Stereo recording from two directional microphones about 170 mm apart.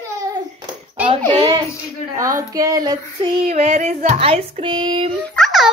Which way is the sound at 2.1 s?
20° right (ahead or behind).